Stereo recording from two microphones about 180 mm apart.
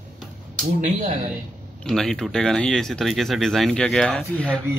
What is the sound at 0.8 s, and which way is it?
Speech, 40° right (ahead or behind).